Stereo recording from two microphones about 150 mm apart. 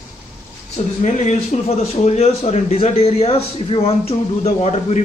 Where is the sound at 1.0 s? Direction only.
55° left (ahead or behind).